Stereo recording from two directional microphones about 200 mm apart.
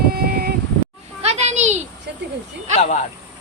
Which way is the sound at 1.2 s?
35° right (ahead or behind).